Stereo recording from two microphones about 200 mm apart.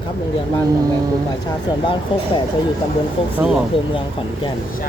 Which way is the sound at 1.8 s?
25° left (ahead or behind).